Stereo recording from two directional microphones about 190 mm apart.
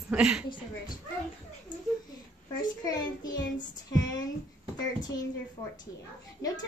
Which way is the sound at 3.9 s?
20° left (ahead or behind).